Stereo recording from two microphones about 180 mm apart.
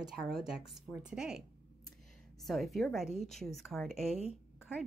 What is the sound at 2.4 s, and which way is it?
Speech, centre (ahead or behind).